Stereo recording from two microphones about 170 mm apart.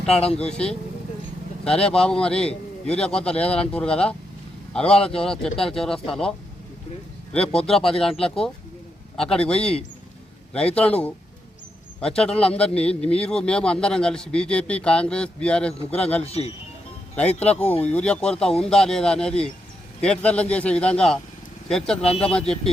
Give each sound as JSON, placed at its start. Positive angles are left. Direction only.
{"t": 0.5, "sound": "a man's voice", "side_deg": 5}
{"t": 7.3, "sound": "a man's voice", "side_deg": 5}
{"t": 16.2, "sound": "speech", "side_deg": 35}
{"t": 17.2, "sound": "a man's voice", "side_deg": 10}
{"t": 22.0, "sound": "speech", "side_deg": 35}
{"t": 22.3, "sound": "a man's voice", "side_deg": 5}